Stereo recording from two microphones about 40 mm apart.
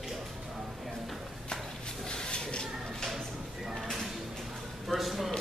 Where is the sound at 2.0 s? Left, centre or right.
Left.